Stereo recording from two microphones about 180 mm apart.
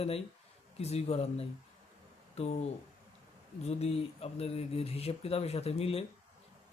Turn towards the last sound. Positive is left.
turn(degrees=35)  # may be behind; listen again after turning